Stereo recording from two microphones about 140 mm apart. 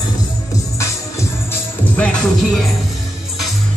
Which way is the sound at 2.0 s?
5° left (ahead or behind).